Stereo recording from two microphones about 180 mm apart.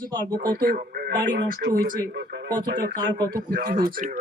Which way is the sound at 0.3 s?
55° right (ahead or behind).